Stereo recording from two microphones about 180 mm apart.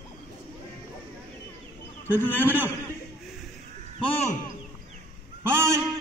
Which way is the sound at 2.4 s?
10° right (ahead or behind).